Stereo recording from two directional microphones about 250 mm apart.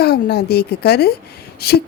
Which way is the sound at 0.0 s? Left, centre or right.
Left.